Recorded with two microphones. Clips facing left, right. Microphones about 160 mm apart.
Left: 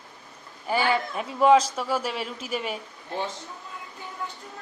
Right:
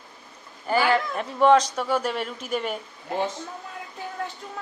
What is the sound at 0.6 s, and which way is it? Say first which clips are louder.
A man's voice: right 3 dB; 5° left (ahead or behind).